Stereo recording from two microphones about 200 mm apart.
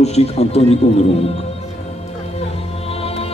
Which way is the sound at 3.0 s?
30° left (ahead or behind).